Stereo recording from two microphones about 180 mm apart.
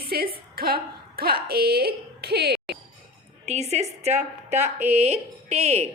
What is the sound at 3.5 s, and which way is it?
A woman's voice, 40° right (ahead or behind).